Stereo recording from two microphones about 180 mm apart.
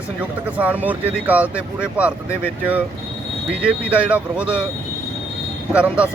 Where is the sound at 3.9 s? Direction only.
5° right (ahead or behind).